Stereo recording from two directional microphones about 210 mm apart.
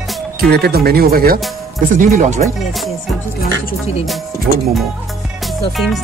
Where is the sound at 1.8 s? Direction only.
35° right (ahead or behind).